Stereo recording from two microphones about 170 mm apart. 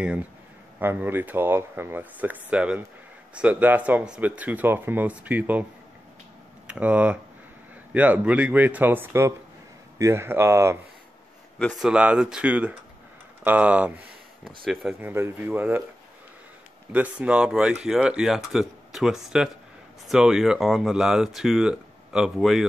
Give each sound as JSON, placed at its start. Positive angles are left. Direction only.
{"t": 0.7, "sound": "speech", "side_deg": -10}
{"t": 6.7, "sound": "speech", "side_deg": -10}
{"t": 11.5, "sound": "speech", "side_deg": 0}
{"t": 15.0, "sound": "speech", "side_deg": -15}
{"t": 16.9, "sound": "speech", "side_deg": -10}